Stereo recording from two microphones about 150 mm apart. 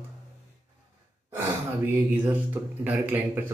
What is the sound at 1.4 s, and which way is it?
Speech, 15° right (ahead or behind).